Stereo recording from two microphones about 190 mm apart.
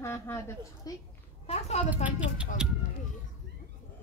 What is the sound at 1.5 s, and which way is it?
Speech, 35° left (ahead or behind).